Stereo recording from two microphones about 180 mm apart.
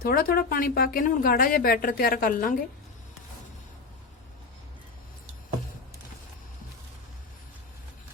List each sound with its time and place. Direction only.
0.0 s a woman's voice: 55° left (ahead or behind)